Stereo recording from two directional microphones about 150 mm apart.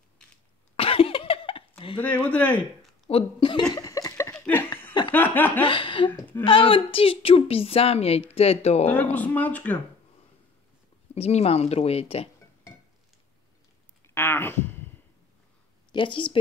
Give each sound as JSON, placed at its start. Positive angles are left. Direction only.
{"t": 0.7, "sound": "cough", "side_deg": 40}
{"t": 2.0, "sound": "speech", "side_deg": 10}
{"t": 3.1, "sound": "a woman's voice", "side_deg": 35}
{"t": 3.7, "sound": "a sound", "side_deg": 25}
{"t": 5.1, "sound": "speech", "side_deg": 10}
{"t": 5.6, "sound": "a woman's voice", "side_deg": 35}
{"t": 8.9, "sound": "speech", "side_deg": 10}
{"t": 11.1, "sound": "speech", "side_deg": 45}
{"t": 14.0, "sound": "a sound", "side_deg": 15}
{"t": 15.9, "sound": "speech", "side_deg": 35}